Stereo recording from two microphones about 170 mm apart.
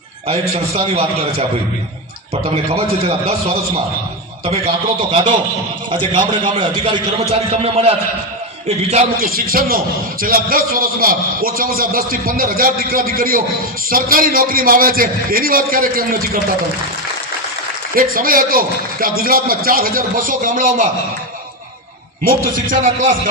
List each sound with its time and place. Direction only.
0.3 s a man's voice: 35° right (ahead or behind)
6.4 s a man's voice: 30° right (ahead or behind)
9.2 s a man's voice: 60° right (ahead or behind)
17.9 s a man's voice: 60° right (ahead or behind)
22.2 s a man's voice: 55° right (ahead or behind)